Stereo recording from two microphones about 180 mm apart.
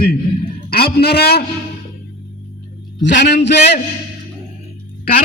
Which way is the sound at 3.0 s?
70° left (ahead or behind).